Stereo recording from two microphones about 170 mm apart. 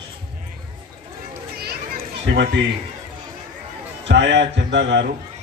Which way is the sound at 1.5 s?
65° right (ahead or behind).